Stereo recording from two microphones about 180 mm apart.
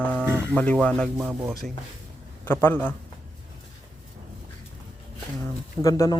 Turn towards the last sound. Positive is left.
turn(degrees=20)  # may be behind; listen again after turning